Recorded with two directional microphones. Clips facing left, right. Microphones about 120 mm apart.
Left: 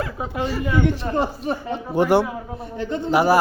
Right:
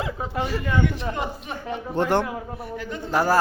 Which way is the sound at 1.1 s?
35° left (ahead or behind).